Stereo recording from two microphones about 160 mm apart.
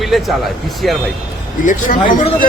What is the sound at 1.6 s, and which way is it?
Speech, 55° left (ahead or behind).